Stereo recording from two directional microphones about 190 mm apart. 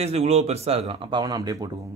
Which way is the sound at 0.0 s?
35° right (ahead or behind).